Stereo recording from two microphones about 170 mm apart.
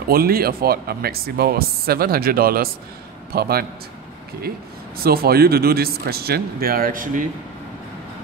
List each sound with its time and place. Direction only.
0.1 s speech: 60° right (ahead or behind)
5.0 s speech: 65° right (ahead or behind)